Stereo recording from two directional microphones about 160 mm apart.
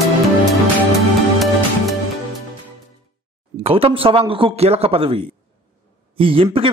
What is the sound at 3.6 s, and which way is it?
A man's voice, 35° right (ahead or behind).